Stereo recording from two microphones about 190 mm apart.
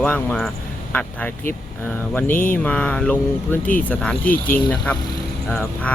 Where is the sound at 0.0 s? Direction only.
5° left (ahead or behind).